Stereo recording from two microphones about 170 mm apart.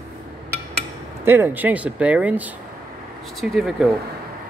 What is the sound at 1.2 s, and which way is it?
Speech, 10° right (ahead or behind).